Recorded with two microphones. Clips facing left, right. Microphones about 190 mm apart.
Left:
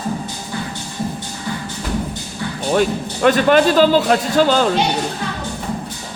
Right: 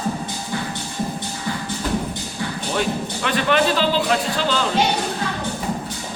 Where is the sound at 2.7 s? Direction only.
45° left (ahead or behind).